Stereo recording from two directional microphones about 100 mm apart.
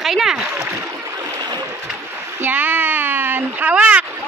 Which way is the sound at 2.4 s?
15° right (ahead or behind).